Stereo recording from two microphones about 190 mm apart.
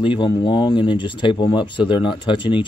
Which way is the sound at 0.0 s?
25° left (ahead or behind).